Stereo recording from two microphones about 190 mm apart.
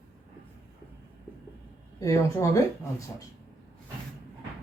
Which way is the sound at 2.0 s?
15° left (ahead or behind).